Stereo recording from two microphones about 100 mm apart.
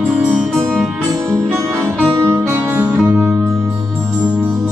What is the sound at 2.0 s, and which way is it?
Music, 25° right (ahead or behind).